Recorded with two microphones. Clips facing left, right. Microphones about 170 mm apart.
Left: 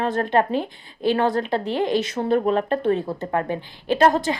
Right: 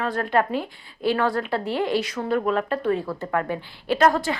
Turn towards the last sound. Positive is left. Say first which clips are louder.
# left 2 dB
turn(degrees=20)  # may be behind; listen again after turning